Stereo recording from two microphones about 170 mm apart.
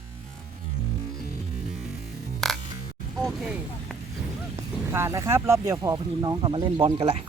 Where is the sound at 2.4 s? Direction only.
Centre (ahead or behind).